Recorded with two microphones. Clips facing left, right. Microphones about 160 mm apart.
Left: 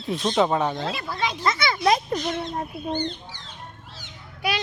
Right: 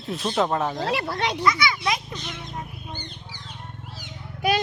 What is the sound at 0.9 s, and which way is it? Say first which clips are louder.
Speech: right 3 dB; 70° right (ahead or behind).